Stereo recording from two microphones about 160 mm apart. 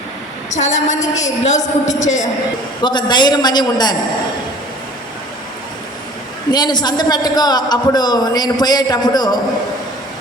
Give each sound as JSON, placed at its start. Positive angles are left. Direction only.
{"t": 0.5, "sound": "a man's voice", "side_deg": 45}
{"t": 2.8, "sound": "a man's voice", "side_deg": 30}
{"t": 6.5, "sound": "a man's voice", "side_deg": 25}